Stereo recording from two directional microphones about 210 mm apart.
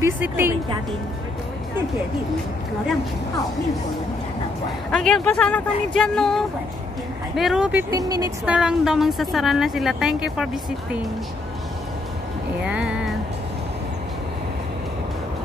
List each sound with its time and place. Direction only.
0.0 s music: 10° right (ahead or behind)
4.9 s speech: 5° left (ahead or behind)
7.9 s speech: 15° right (ahead or behind)
8.5 s speech: 5° right (ahead or behind)
12.6 s music: 5° right (ahead or behind)